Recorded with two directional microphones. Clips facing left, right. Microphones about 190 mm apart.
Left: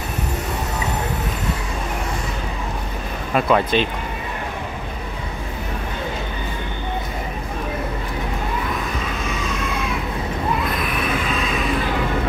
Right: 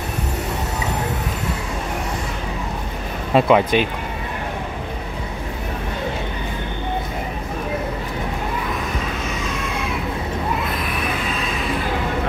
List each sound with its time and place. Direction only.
3.3 s speech: 15° right (ahead or behind)